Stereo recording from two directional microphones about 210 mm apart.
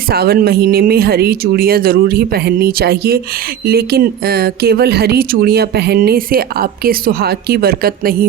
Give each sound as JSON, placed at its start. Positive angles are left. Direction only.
{"t": 0.1, "sound": "speech", "side_deg": -50}